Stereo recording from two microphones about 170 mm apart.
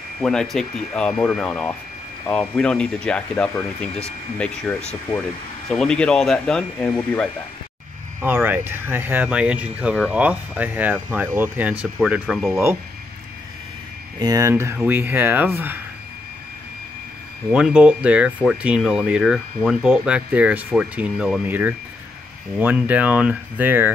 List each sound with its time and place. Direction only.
0.2 s speech: 5° left (ahead or behind)
8.2 s speech: 10° right (ahead or behind)
14.2 s speech: 20° right (ahead or behind)
17.5 s speech: 5° right (ahead or behind)